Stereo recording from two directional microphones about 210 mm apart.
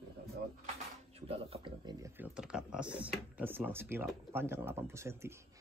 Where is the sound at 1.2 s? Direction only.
25° right (ahead or behind).